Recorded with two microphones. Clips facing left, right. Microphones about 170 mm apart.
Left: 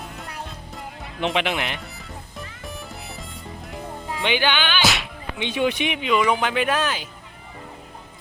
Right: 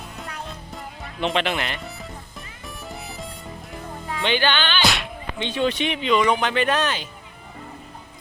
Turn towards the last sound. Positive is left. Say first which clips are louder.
# right 1 dB
turn(degrees=5)  # may be behind; listen again after turning